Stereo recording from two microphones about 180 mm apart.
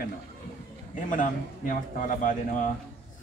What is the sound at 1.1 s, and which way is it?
A man's voice, 50° left (ahead or behind).